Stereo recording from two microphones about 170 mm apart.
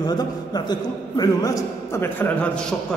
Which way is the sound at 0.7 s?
25° left (ahead or behind).